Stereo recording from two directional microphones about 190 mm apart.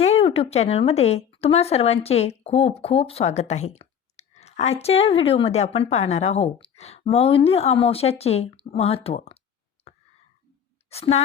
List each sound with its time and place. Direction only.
0.0 s a woman's voice: 30° left (ahead or behind)
10.8 s a woman's voice: 35° left (ahead or behind)